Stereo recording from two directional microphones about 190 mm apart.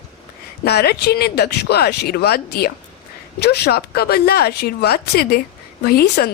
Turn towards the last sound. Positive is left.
turn(degrees=55)  # may be behind; listen again after turning